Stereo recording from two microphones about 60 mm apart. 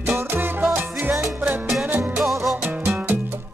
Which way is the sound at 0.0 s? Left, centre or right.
Right.